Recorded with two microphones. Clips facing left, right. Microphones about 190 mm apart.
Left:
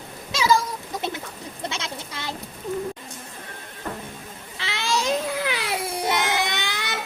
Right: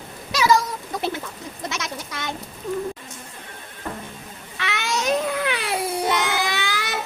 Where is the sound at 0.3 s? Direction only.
25° left (ahead or behind).